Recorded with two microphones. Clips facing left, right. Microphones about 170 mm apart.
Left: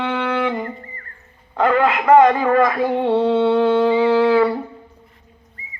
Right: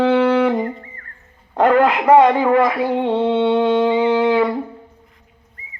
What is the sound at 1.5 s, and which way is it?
Speech, 45° right (ahead or behind).